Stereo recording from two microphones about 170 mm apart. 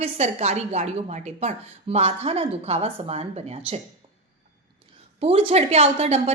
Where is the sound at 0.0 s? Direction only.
40° right (ahead or behind).